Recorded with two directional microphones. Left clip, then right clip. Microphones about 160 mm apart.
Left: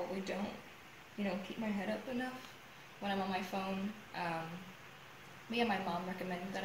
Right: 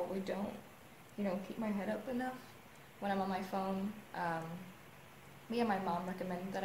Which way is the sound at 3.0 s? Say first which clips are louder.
Right 1 dB; 15° right (ahead or behind).